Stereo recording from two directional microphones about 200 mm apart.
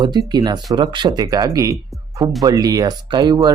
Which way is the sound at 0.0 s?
20° right (ahead or behind).